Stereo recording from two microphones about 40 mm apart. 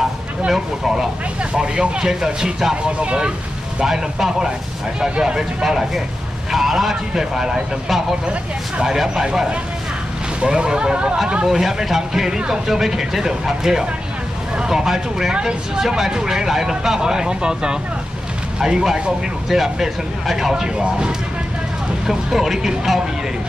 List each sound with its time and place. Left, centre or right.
0.5 s speech: centre
1.5 s speech: right
3.8 s speech: centre
8.8 s speech: centre
11.4 s speech: centre
12.1 s speech: centre
19.5 s speech: centre
20.6 s speech: right
22.0 s speech: centre